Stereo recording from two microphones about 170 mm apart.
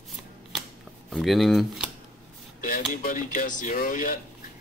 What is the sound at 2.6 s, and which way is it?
Speech, 55° left (ahead or behind).